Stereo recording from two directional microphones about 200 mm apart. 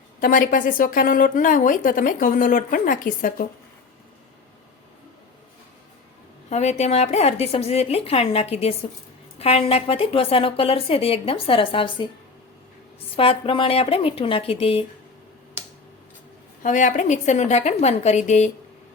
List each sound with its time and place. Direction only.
0.2 s a woman's voice: 45° left (ahead or behind)
6.5 s a woman's voice: 35° left (ahead or behind)
13.1 s a woman's voice: 25° left (ahead or behind)
16.6 s a woman's voice: 40° left (ahead or behind)